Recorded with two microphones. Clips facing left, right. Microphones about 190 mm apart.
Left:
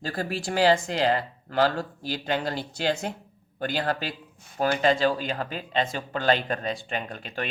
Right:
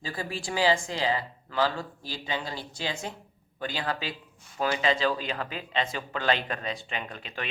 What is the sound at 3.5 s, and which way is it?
Speech, 55° left (ahead or behind).